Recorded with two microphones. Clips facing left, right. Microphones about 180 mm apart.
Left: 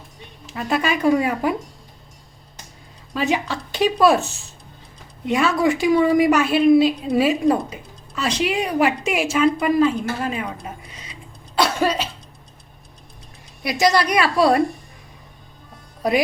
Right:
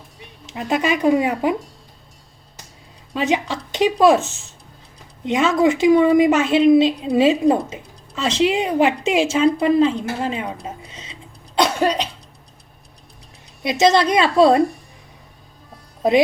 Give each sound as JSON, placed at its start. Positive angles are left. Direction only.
{"t": 0.5, "sound": "speech", "side_deg": -20}
{"t": 3.2, "sound": "a woman's voice", "side_deg": -20}
{"t": 13.6, "sound": "speech", "side_deg": -25}